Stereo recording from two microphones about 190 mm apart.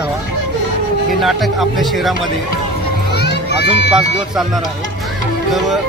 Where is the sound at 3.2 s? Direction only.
60° left (ahead or behind).